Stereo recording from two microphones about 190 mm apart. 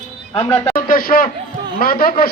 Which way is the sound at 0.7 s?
50° left (ahead or behind).